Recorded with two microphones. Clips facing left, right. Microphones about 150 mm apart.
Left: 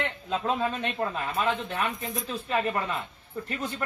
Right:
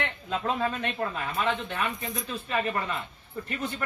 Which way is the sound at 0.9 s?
25° left (ahead or behind).